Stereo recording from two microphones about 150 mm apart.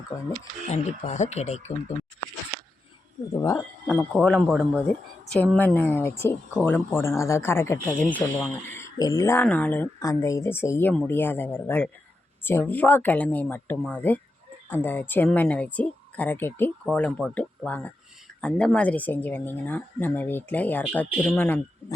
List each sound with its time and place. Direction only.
0.1 s speech: centre (ahead or behind)
0.7 s speech: 50° left (ahead or behind)
3.6 s speech: 5° left (ahead or behind)
8.0 s speech: centre (ahead or behind)
8.7 s speech: 20° left (ahead or behind)